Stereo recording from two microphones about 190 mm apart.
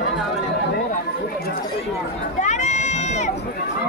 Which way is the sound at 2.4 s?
40° left (ahead or behind).